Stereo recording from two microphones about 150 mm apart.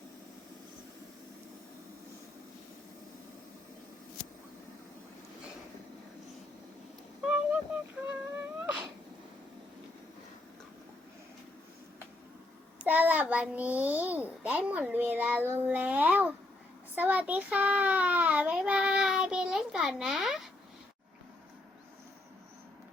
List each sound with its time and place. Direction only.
7.2 s a sound: 5° right (ahead or behind)
12.8 s a child's voice: 10° right (ahead or behind)
16.9 s child singing: 10° right (ahead or behind)